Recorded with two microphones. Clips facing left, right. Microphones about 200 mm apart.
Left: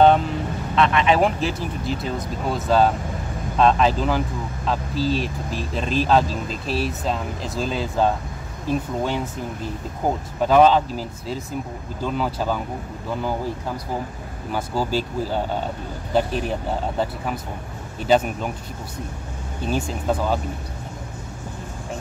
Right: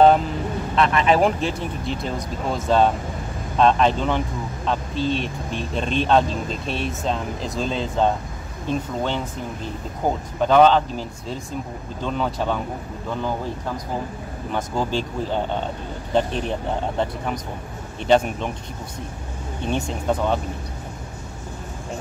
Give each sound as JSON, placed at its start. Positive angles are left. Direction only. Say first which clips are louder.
{"t": 0.8, "sound": "speech", "louder": "even", "side_deg": -35}
{"t": 1.1, "sound": "speech", "louder": "right 1 dB", "side_deg": 0}
{"t": 14.5, "sound": "speech", "louder": "left 1 dB", "side_deg": 5}
{"t": 18.0, "sound": "speech", "louder": "right 1 dB", "side_deg": 5}
{"t": 19.7, "sound": "speech", "louder": "even", "side_deg": 5}